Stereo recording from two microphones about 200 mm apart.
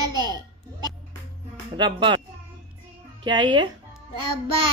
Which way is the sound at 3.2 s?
25° right (ahead or behind).